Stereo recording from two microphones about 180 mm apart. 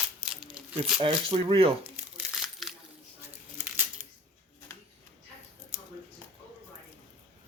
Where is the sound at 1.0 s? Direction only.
30° right (ahead or behind).